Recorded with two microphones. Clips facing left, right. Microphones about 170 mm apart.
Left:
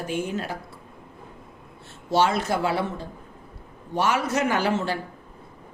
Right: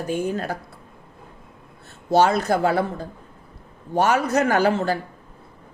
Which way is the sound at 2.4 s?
45° right (ahead or behind).